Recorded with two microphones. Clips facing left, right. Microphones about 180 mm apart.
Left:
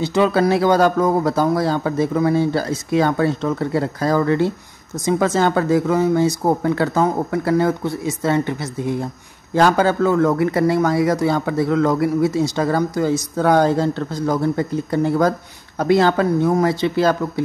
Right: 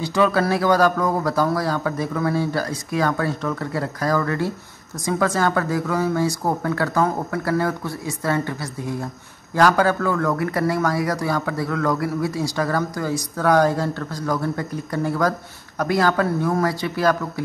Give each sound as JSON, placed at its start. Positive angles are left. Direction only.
{"t": 0.0, "sound": "speech", "side_deg": 25}